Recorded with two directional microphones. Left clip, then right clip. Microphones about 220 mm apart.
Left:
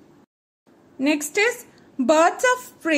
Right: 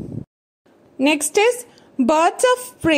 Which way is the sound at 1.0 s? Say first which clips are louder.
Right 4 dB; 25° right (ahead or behind).